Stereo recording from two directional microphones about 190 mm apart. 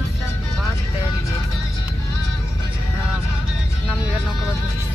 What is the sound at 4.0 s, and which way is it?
Music, 5° right (ahead or behind).